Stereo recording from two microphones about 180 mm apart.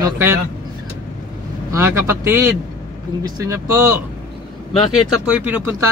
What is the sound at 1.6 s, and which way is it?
Speech, 15° right (ahead or behind).